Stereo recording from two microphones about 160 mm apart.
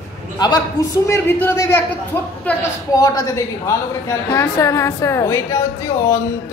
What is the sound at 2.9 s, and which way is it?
A woman's voice, 20° left (ahead or behind).